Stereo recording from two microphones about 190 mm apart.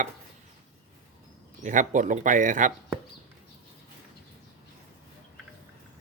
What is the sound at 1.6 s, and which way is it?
Speech, 40° right (ahead or behind).